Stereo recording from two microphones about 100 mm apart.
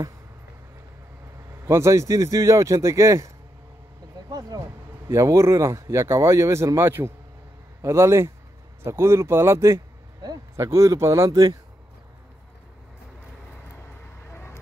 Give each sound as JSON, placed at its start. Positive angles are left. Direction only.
{"t": 1.5, "sound": "speech", "side_deg": -30}
{"t": 4.3, "sound": "speech", "side_deg": -40}
{"t": 14.3, "sound": "vehicle", "side_deg": 20}